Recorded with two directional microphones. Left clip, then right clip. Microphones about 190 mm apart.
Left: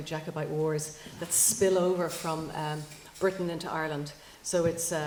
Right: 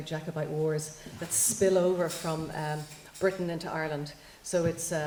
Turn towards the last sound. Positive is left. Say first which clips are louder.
# left 1 dB
turn(degrees=30)  # may be behind; listen again after turning